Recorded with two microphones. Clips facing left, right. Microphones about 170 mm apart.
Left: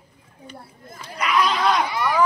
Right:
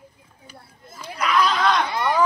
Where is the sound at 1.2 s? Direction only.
Centre (ahead or behind).